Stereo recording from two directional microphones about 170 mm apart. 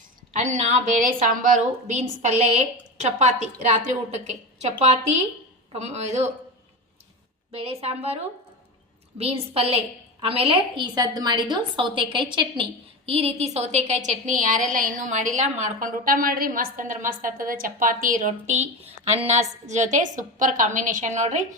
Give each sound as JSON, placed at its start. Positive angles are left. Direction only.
{"t": 0.3, "sound": "a woman's voice", "side_deg": -45}
{"t": 7.5, "sound": "a woman's voice", "side_deg": -35}